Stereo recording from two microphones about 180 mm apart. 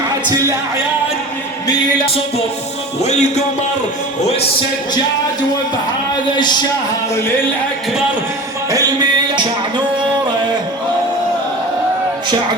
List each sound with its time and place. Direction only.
3.0 s music: 40° left (ahead or behind)
6.3 s a man's voice: 25° left (ahead or behind)
9.3 s a sound: 25° right (ahead or behind)